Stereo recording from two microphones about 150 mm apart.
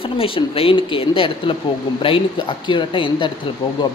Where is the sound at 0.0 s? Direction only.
40° left (ahead or behind).